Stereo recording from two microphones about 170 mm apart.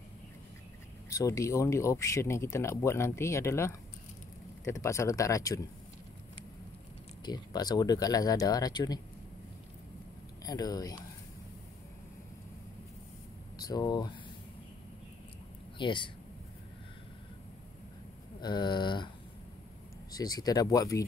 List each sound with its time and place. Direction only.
1.1 s speech: 20° left (ahead or behind)
7.2 s speech: 25° left (ahead or behind)
10.4 s speech: 20° left (ahead or behind)
13.6 s speech: 25° left (ahead or behind)
15.8 s speech: 30° left (ahead or behind)
18.4 s speech: 25° left (ahead or behind)
20.1 s speech: 20° left (ahead or behind)